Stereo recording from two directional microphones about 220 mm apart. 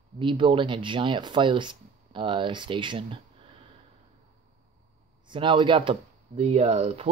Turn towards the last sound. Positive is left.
turn(degrees=-30)  # may be behind; listen again after turning